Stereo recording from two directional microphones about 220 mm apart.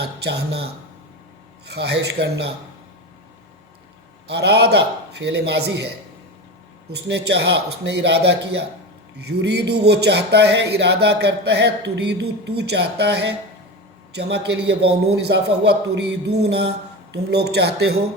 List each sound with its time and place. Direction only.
0.0 s a man's voice: 50° right (ahead or behind)
4.3 s a man's voice: 50° right (ahead or behind)
6.9 s a man's voice: 50° right (ahead or behind)